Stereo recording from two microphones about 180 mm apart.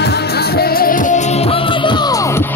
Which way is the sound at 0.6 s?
55° left (ahead or behind).